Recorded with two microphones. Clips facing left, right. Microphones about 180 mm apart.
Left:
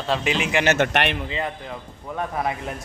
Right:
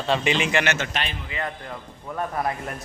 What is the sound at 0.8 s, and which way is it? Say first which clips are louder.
Speech: left 8 dB; 65° left (ahead or behind).